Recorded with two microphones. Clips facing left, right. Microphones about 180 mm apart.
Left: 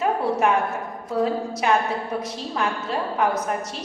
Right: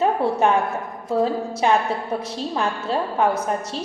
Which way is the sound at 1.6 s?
30° right (ahead or behind).